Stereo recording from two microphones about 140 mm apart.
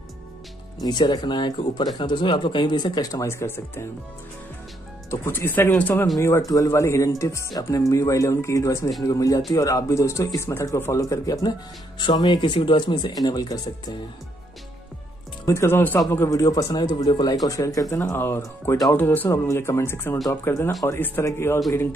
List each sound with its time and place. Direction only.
0.8 s speech: 30° left (ahead or behind)
5.1 s speech: 15° left (ahead or behind)
15.4 s speech: 20° left (ahead or behind)